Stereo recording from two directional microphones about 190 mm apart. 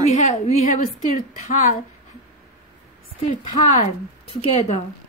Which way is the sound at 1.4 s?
45° left (ahead or behind).